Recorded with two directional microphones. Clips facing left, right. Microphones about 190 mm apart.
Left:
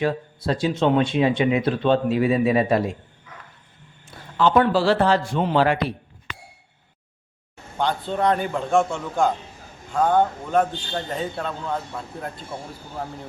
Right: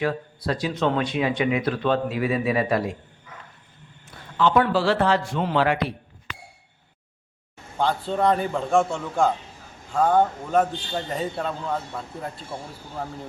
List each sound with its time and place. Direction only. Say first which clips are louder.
0.0 s speech: left 2 dB; 25° left (ahead or behind)
4.4 s a man's voice: left 2 dB; 35° left (ahead or behind)
7.8 s a man's voice: even; centre (ahead or behind)